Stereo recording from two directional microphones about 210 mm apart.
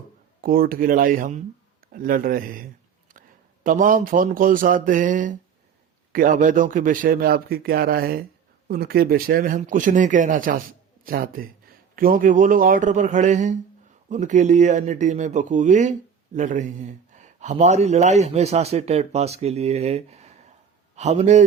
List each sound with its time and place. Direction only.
0.4 s a man's voice: 45° right (ahead or behind)